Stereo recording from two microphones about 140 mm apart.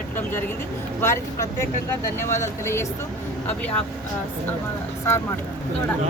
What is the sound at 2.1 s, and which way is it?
Speech, 20° left (ahead or behind).